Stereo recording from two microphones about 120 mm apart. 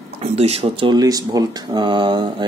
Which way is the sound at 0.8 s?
35° right (ahead or behind).